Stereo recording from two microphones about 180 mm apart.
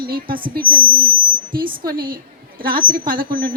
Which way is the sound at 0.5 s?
55° right (ahead or behind).